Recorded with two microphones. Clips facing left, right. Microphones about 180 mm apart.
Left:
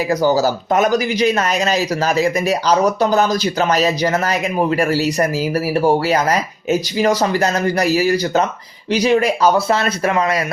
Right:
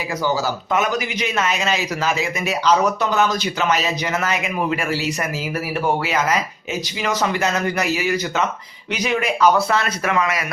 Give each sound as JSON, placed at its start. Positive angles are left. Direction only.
{"t": 0.1, "sound": "speech", "side_deg": 40}